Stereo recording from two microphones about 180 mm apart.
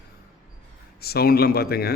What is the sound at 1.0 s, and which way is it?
Speech, 60° left (ahead or behind).